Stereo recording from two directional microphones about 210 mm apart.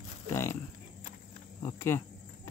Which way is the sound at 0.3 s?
10° left (ahead or behind).